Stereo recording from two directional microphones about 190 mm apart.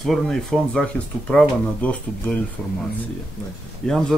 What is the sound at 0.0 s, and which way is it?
Speech, centre (ahead or behind).